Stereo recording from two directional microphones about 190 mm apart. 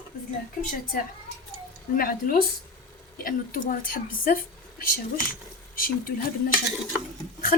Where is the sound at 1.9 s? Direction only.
50° left (ahead or behind).